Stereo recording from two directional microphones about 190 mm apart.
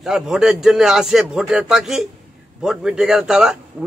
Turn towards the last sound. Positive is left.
turn(degrees=-5)  # may be behind; listen again after turning